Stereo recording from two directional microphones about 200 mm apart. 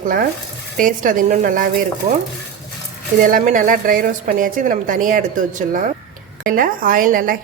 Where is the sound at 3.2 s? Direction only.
40° right (ahead or behind).